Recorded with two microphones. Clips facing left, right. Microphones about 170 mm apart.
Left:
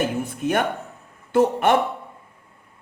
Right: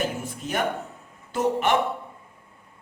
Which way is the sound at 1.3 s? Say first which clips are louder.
Left 5 dB; 50° left (ahead or behind).